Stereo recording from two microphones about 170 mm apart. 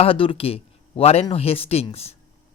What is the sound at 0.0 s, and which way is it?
Speech, 30° left (ahead or behind).